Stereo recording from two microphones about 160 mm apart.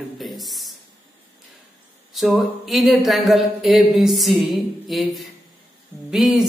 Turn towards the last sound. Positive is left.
turn(degrees=0)  # may be behind; listen again after turning